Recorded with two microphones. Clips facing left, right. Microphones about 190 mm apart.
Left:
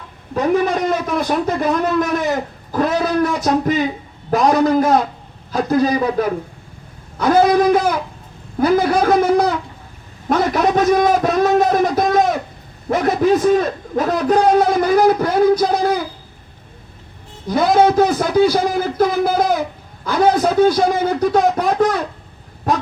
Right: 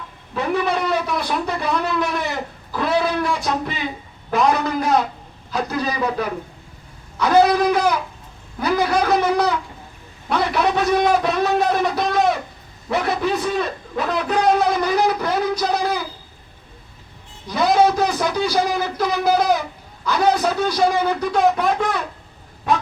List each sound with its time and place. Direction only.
0.3 s a man's voice: 40° left (ahead or behind)
17.4 s a man's voice: 50° left (ahead or behind)